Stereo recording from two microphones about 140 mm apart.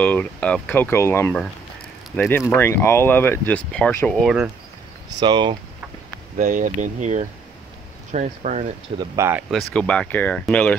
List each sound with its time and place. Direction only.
0.0 s speech: 10° left (ahead or behind)
5.2 s speech: 35° right (ahead or behind)
6.3 s speech: 65° right (ahead or behind)
9.1 s speech: 20° right (ahead or behind)
9.5 s speech: 5° left (ahead or behind)